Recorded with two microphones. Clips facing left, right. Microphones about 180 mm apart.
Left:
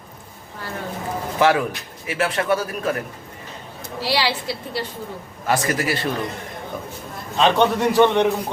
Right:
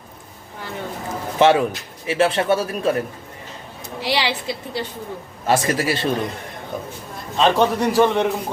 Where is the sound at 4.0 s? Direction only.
20° right (ahead or behind).